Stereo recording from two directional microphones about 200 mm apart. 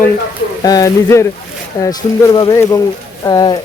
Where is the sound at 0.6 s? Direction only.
15° left (ahead or behind).